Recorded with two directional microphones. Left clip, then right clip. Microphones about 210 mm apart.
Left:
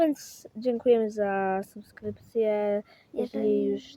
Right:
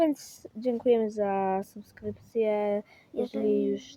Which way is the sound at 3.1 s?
20° left (ahead or behind).